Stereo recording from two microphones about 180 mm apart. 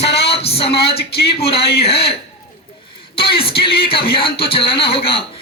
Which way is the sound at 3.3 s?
30° left (ahead or behind).